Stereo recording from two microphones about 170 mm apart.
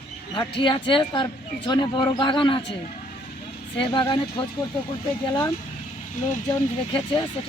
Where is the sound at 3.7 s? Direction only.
30° left (ahead or behind).